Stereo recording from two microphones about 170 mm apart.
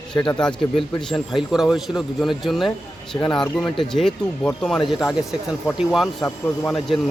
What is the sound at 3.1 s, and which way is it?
Speech, 25° left (ahead or behind).